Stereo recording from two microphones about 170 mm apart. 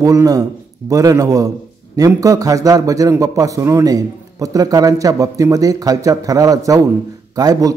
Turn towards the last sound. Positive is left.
turn(degrees=-20)  # may be behind; listen again after turning